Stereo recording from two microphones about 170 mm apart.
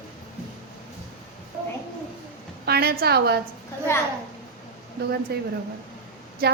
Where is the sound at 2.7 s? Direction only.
65° right (ahead or behind).